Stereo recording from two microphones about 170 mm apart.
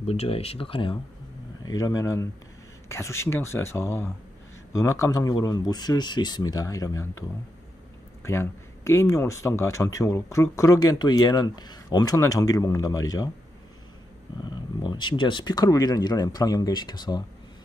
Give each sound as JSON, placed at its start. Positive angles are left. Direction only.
{"t": 0.0, "sound": "speech", "side_deg": 35}
{"t": 14.5, "sound": "speech", "side_deg": 25}